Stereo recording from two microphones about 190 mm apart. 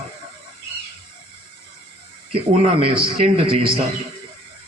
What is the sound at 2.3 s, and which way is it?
A man's voice, 30° right (ahead or behind).